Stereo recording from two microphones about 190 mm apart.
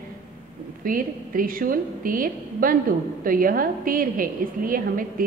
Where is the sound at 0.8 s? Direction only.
45° right (ahead or behind).